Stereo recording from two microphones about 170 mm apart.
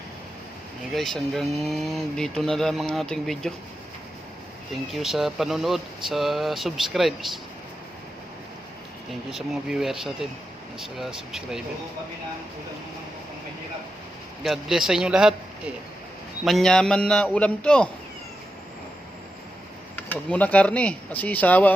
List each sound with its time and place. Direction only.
0.9 s speech: centre (ahead or behind)
4.9 s speech: centre (ahead or behind)
9.3 s speech: centre (ahead or behind)
14.4 s speech: centre (ahead or behind)
16.4 s speech: centre (ahead or behind)
20.0 s speech: 10° left (ahead or behind)